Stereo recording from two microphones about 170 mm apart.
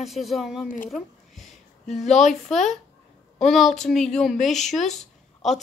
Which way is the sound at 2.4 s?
Centre (ahead or behind).